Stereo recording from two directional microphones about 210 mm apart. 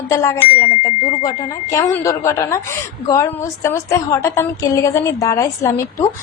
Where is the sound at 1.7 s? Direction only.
15° left (ahead or behind).